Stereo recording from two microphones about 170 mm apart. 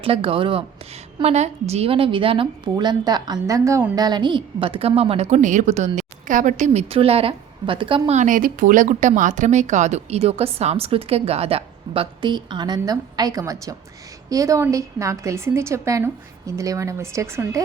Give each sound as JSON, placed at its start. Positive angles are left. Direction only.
{"t": 0.0, "sound": "a woman's voice", "side_deg": -35}